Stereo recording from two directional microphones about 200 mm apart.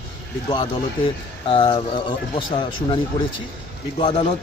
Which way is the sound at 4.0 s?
30° left (ahead or behind).